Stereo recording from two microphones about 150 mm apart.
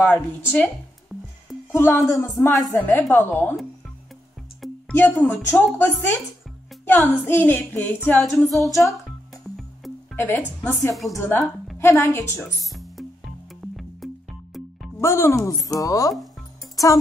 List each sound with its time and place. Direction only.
0.0 s a woman's voice: 10° left (ahead or behind)
1.1 s music: centre (ahead or behind)
1.7 s a woman's voice: 15° left (ahead or behind)
4.6 s music: centre (ahead or behind)
4.9 s a woman's voice: 15° left (ahead or behind)
8.2 s female singing: centre (ahead or behind)
10.1 s a woman's voice: 15° left (ahead or behind)
12.4 s music: centre (ahead or behind)
15.0 s speech: 20° left (ahead or behind)